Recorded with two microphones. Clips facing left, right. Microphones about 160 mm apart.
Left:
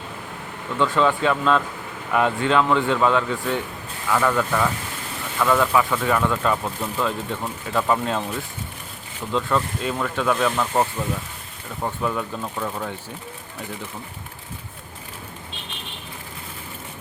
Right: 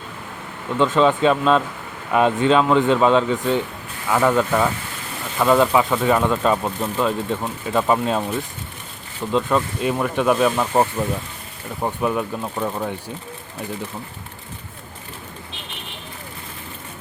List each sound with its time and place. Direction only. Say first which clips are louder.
0.8 s speech: right 4 dB; 20° right (ahead or behind)